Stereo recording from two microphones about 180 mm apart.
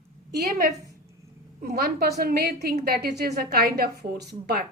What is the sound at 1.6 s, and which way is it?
A woman's voice, 60° right (ahead or behind).